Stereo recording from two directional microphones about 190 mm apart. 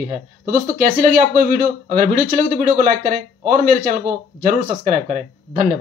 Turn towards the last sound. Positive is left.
turn(degrees=-45)  # may be behind; listen again after turning